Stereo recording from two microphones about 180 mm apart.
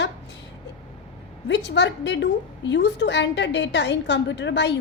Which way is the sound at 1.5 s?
75° left (ahead or behind).